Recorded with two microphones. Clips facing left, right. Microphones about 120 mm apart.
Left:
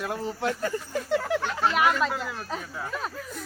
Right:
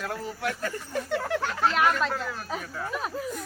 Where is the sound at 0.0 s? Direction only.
20° left (ahead or behind).